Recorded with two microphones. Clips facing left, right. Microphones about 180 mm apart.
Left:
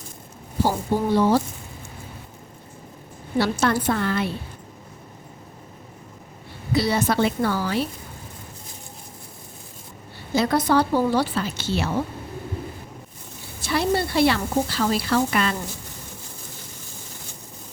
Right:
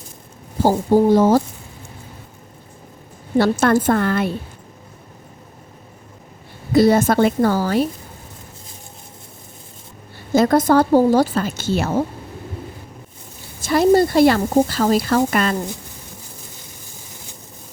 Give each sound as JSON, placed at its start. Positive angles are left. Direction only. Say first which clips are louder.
{"t": 0.6, "sound": "speech", "louder": "right 8 dB", "side_deg": -40}
{"t": 3.3, "sound": "speech", "louder": "right 6 dB", "side_deg": -50}
{"t": 6.7, "sound": "speech", "louder": "right 8 dB", "side_deg": -45}
{"t": 10.3, "sound": "speech", "louder": "right 6 dB", "side_deg": -45}
{"t": 13.7, "sound": "speech", "louder": "right 9 dB", "side_deg": -45}